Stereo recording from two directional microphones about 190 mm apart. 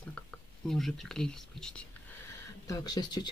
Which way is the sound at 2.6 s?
20° left (ahead or behind).